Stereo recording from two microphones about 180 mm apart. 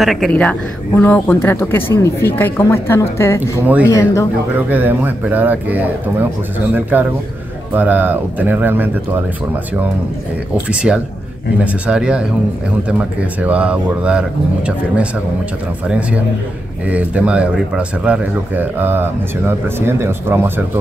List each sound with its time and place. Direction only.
0.0 s a woman's voice: centre (ahead or behind)
3.6 s speech: 10° right (ahead or behind)
3.9 s a woman's voice: 15° left (ahead or behind)
4.6 s speech: 10° right (ahead or behind)
10.7 s speech: 5° right (ahead or behind)
16.8 s speech: 5° right (ahead or behind)